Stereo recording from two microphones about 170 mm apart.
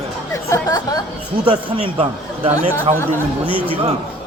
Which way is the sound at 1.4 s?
35° right (ahead or behind).